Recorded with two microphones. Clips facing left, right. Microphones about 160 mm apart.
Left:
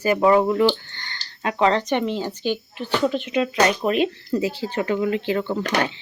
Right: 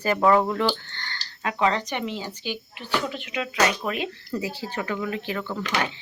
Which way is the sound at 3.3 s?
25° left (ahead or behind).